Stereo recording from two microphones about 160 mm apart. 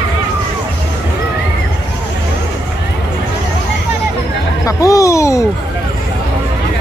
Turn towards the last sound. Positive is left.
turn(degrees=20)  # may be behind; listen again after turning